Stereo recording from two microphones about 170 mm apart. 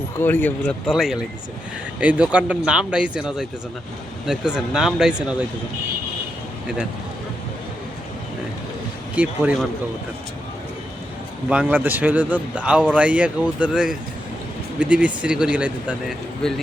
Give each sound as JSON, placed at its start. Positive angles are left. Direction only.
{"t": 0.2, "sound": "speech", "side_deg": 10}
{"t": 9.1, "sound": "speech", "side_deg": -10}
{"t": 11.4, "sound": "speech", "side_deg": -10}